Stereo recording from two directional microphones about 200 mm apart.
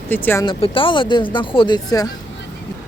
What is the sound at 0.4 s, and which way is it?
Speech, 25° left (ahead or behind).